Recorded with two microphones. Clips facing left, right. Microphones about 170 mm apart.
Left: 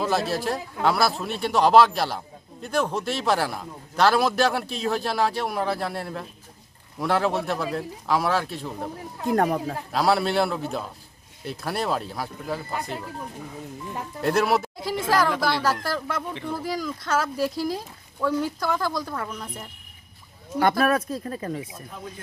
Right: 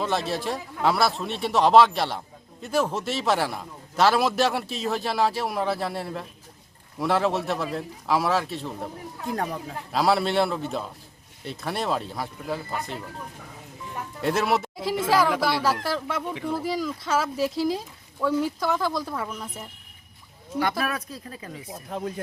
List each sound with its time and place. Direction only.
0.0 s a man's voice: 5° left (ahead or behind)
9.3 s speech: 55° left (ahead or behind)
9.9 s a man's voice: centre (ahead or behind)
14.2 s a man's voice: centre (ahead or behind)
20.6 s speech: 50° left (ahead or behind)